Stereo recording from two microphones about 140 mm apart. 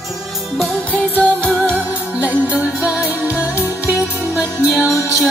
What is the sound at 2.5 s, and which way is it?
Music, 10° right (ahead or behind).